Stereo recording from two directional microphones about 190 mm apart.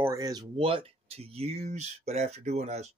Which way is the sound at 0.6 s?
30° right (ahead or behind).